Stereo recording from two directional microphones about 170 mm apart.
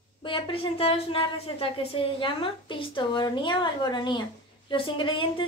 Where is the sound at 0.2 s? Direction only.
35° left (ahead or behind).